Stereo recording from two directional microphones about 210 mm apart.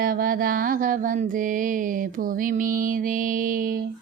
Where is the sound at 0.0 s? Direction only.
45° right (ahead or behind).